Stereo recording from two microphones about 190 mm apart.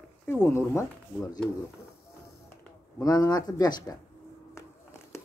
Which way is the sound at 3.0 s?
20° left (ahead or behind).